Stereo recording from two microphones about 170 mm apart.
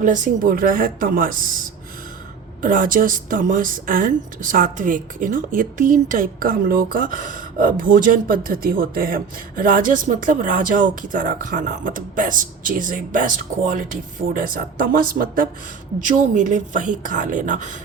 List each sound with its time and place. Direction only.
0.0 s speech: 55° right (ahead or behind)